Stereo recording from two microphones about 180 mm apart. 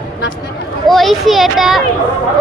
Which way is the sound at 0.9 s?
Centre (ahead or behind).